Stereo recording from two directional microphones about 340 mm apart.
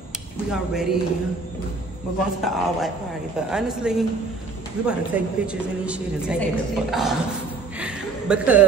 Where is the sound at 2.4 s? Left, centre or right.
Centre.